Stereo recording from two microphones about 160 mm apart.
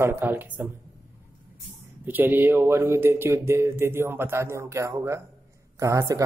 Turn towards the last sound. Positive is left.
turn(degrees=-20)  # may be behind; listen again after turning